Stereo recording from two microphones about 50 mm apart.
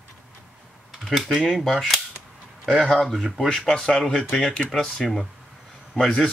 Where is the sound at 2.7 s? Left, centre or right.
Centre.